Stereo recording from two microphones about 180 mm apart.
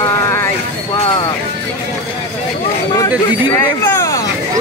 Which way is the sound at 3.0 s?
20° left (ahead or behind).